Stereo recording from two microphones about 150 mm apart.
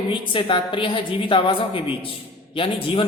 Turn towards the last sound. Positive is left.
turn(degrees=35)  # may be behind; listen again after turning